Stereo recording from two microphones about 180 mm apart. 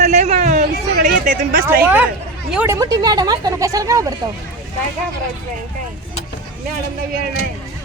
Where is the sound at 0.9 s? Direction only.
50° right (ahead or behind).